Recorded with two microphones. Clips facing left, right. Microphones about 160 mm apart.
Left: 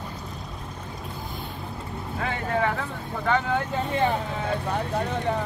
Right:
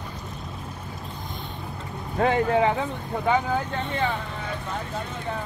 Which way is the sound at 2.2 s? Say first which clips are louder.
Right 9 dB; 35° right (ahead or behind).